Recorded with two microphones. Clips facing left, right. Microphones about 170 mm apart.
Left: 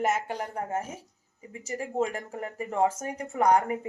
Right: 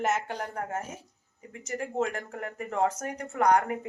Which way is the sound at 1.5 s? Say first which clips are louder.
Left 1 dB; 10° left (ahead or behind).